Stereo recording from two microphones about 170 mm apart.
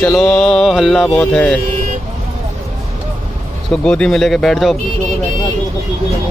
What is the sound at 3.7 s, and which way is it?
Speech, 5° left (ahead or behind).